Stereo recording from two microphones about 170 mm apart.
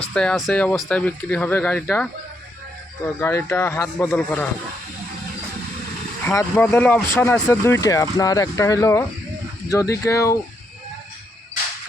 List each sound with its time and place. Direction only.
0.1 s speech: 5° left (ahead or behind)
3.2 s speech: 15° left (ahead or behind)
6.2 s speech: 10° left (ahead or behind)